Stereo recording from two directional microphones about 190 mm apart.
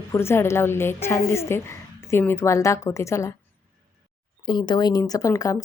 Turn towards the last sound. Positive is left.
turn(degrees=15)  # may be behind; listen again after turning